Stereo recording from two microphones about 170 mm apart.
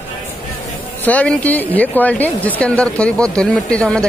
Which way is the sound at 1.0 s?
5° left (ahead or behind).